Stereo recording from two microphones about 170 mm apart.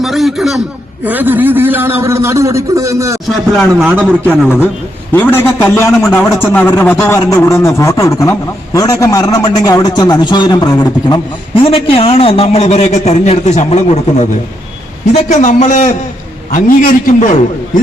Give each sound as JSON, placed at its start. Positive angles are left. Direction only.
{"t": 0.0, "sound": "a sound", "side_deg": 0}
{"t": 1.0, "sound": "a man's voice", "side_deg": -10}
{"t": 3.2, "sound": "a man's voice", "side_deg": 0}
{"t": 5.1, "sound": "a man's voice", "side_deg": 10}